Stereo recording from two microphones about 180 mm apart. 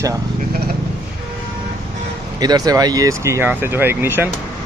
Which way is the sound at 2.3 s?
20° right (ahead or behind).